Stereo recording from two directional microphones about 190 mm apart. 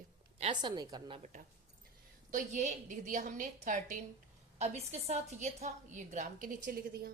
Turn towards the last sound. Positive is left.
turn(degrees=-55)  # may be behind; listen again after turning